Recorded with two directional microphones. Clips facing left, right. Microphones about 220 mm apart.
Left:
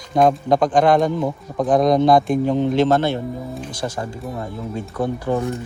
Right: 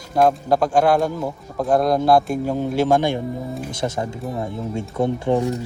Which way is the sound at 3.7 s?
25° right (ahead or behind).